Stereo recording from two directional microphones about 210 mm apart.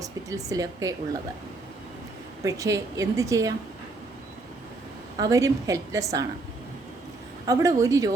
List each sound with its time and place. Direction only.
0.0 s speech: 15° right (ahead or behind)
2.4 s speech: 15° right (ahead or behind)
5.1 s speech: 15° right (ahead or behind)
7.4 s speech: 15° right (ahead or behind)